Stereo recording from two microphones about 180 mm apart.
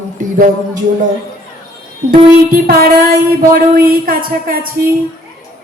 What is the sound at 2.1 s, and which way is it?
Speech, 55° right (ahead or behind).